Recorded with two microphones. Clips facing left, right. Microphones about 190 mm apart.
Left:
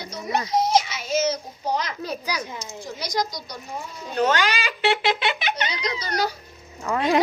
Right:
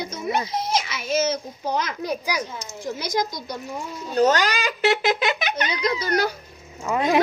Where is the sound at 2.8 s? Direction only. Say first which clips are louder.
Right 2 dB; 50° right (ahead or behind).